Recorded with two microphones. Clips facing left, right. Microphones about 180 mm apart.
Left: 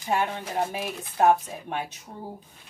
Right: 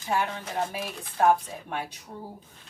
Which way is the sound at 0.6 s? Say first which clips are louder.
Left 2 dB; 20° left (ahead or behind).